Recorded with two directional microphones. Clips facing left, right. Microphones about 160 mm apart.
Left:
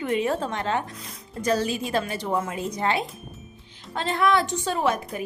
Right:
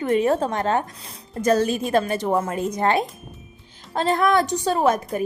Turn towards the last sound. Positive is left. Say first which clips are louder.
# right 5 dB
turn(degrees=-45)  # may be behind; listen again after turning